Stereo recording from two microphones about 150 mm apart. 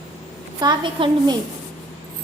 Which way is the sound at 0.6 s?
30° right (ahead or behind).